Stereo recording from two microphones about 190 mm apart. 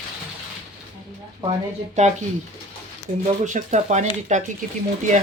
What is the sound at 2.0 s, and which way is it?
Speech, 40° right (ahead or behind).